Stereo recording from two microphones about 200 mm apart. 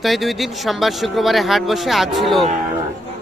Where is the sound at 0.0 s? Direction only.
Centre (ahead or behind).